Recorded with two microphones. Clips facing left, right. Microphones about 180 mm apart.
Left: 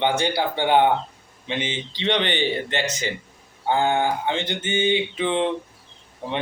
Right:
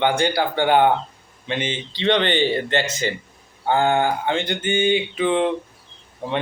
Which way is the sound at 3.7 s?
55° right (ahead or behind).